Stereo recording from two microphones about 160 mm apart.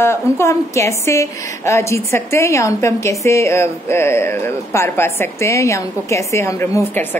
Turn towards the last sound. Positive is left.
turn(degrees=15)  # may be behind; listen again after turning